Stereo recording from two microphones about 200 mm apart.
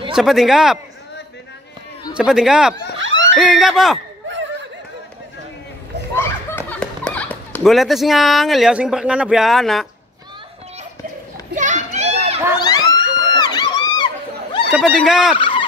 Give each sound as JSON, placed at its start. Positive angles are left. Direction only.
{"t": 0.1, "sound": "a man's voice", "side_deg": 0}
{"t": 2.1, "sound": "a man's voice", "side_deg": -5}
{"t": 3.0, "sound": "a sound", "side_deg": -70}
{"t": 3.3, "sound": "a man's voice", "side_deg": 0}
{"t": 6.1, "sound": "children playing", "side_deg": 10}
{"t": 6.8, "sound": "speech", "side_deg": 5}
{"t": 11.5, "sound": "children playing", "side_deg": -40}
{"t": 12.5, "sound": "a sound", "side_deg": 20}
{"t": 14.7, "sound": "a man's voice", "side_deg": 0}
{"t": 15.3, "sound": "fowl", "side_deg": 25}